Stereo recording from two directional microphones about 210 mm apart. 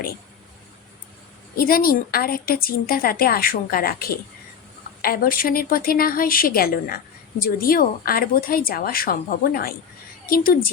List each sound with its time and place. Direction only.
1.5 s a woman's voice: 45° left (ahead or behind)